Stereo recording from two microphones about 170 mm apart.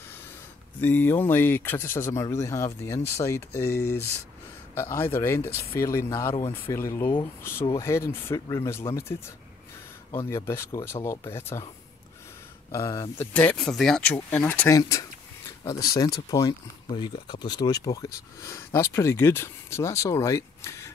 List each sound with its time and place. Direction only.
0.7 s speech: 10° left (ahead or behind)
10.3 s speech: 15° left (ahead or behind)
12.7 s speech: 20° left (ahead or behind)
13.3 s speech: 10° left (ahead or behind)